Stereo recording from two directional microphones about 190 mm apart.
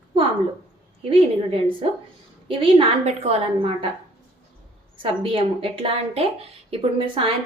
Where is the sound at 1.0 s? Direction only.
30° right (ahead or behind).